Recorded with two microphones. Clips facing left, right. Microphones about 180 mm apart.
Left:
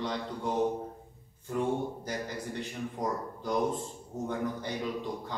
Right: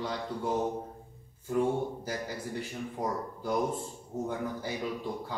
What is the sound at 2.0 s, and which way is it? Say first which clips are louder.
A man's voice: even; 5° right (ahead or behind).